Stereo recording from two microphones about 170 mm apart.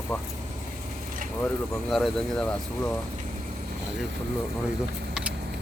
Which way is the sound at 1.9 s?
Centre (ahead or behind).